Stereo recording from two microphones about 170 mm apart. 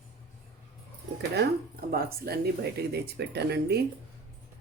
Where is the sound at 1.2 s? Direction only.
70° right (ahead or behind).